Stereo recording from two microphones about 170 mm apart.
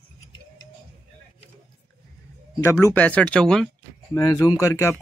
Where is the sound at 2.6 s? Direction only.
15° left (ahead or behind).